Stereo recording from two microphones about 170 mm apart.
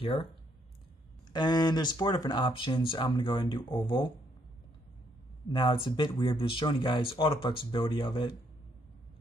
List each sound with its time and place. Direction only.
0.0 s speech: 30° left (ahead or behind)
1.3 s speech: 25° left (ahead or behind)
5.5 s speech: 30° left (ahead or behind)